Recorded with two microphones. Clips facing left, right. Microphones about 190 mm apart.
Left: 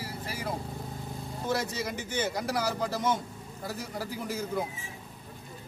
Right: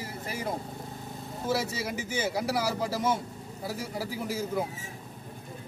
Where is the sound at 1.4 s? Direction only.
5° right (ahead or behind).